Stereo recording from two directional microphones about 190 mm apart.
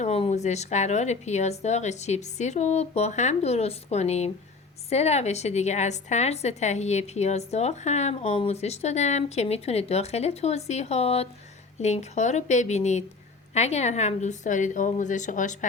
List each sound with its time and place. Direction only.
0.0 s a woman's voice: 35° left (ahead or behind)